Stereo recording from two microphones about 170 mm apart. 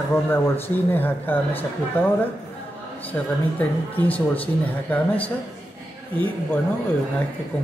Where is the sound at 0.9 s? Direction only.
10° left (ahead or behind).